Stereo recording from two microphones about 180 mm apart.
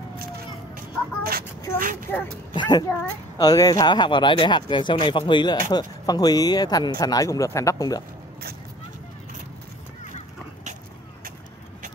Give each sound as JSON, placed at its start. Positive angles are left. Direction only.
{"t": 0.7, "sound": "a sound", "side_deg": -55}
{"t": 1.8, "sound": "speech", "side_deg": -50}
{"t": 2.0, "sound": "speech", "side_deg": 10}
{"t": 2.5, "sound": "speech", "side_deg": 25}